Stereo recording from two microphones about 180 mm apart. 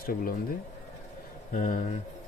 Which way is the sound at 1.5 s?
45° left (ahead or behind).